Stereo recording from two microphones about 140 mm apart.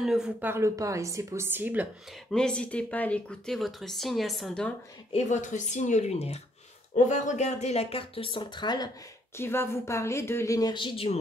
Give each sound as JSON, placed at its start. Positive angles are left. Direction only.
{"t": 0.0, "sound": "speech", "side_deg": -5}
{"t": 0.5, "sound": "speech", "side_deg": -20}
{"t": 2.3, "sound": "speech", "side_deg": 5}
{"t": 5.1, "sound": "speech", "side_deg": 60}
{"t": 7.1, "sound": "speech", "side_deg": 60}
{"t": 9.4, "sound": "speech", "side_deg": 20}